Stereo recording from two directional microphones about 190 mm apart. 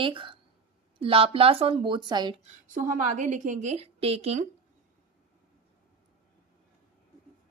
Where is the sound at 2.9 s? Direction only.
40° right (ahead or behind).